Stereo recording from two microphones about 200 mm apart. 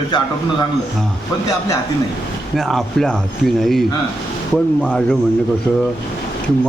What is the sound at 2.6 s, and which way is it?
Speech, centre (ahead or behind).